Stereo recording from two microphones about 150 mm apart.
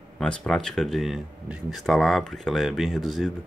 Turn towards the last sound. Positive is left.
turn(degrees=0)  # may be behind; listen again after turning